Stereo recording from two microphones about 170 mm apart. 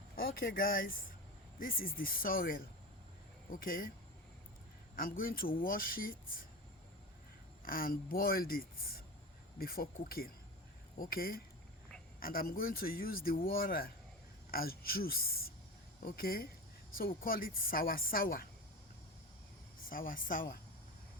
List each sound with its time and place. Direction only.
0.2 s speech: 60° left (ahead or behind)
4.9 s speech: 55° left (ahead or behind)
7.6 s speech: 55° left (ahead or behind)
19.9 s speech: 55° left (ahead or behind)